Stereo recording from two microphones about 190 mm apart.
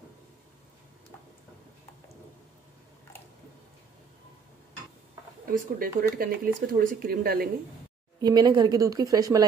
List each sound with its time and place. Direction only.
5.5 s speech: 50° right (ahead or behind)
8.2 s a woman's voice: 20° right (ahead or behind)